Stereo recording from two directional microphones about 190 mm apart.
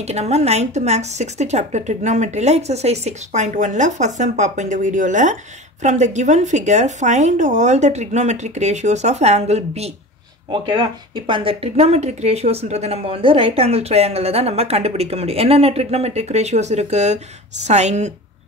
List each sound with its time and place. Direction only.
0.0 s a woman's voice: 35° right (ahead or behind)